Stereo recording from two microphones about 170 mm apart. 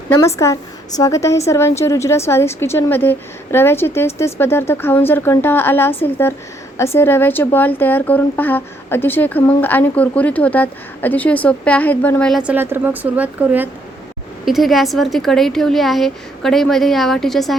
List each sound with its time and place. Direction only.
0.1 s speech: 15° left (ahead or behind)
12.3 s a woman's voice: 5° right (ahead or behind)